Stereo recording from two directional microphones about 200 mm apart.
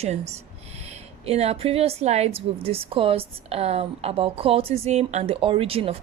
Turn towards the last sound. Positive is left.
turn(degrees=-30)  # may be behind; listen again after turning